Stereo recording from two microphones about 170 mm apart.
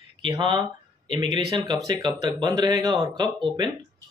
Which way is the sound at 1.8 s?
20° right (ahead or behind).